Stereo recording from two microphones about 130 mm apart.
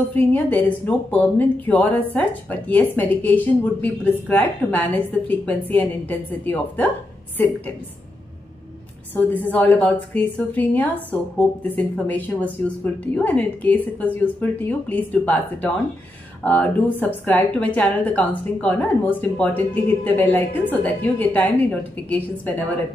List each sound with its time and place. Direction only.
0.1 s a woman's voice: 15° left (ahead or behind)
9.1 s a woman's voice: 15° left (ahead or behind)